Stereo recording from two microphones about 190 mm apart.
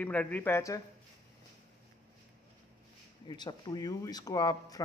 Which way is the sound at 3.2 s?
25° left (ahead or behind).